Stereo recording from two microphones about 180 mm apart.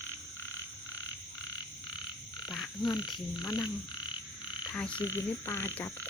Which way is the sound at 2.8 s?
20° left (ahead or behind).